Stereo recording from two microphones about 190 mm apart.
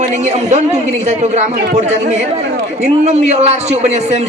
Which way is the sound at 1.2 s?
35° right (ahead or behind).